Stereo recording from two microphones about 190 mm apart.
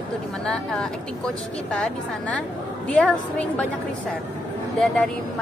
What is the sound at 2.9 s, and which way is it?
Speech, 5° left (ahead or behind).